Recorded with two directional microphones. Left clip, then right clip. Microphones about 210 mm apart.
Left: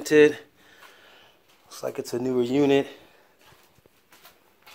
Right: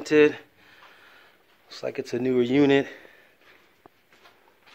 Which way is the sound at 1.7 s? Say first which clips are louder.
Even; 15° right (ahead or behind).